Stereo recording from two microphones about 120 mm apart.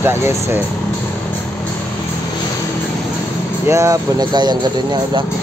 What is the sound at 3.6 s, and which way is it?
Speech, 25° right (ahead or behind).